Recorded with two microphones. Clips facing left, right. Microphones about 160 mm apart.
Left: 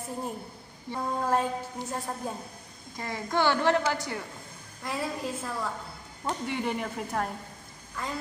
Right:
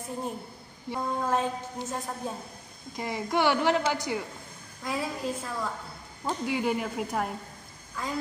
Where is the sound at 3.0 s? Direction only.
15° right (ahead or behind).